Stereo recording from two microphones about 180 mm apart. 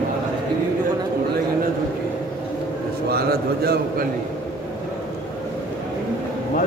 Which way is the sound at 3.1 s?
60° right (ahead or behind).